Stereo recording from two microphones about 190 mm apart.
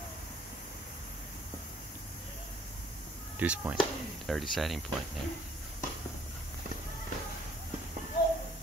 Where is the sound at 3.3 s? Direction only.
10° right (ahead or behind).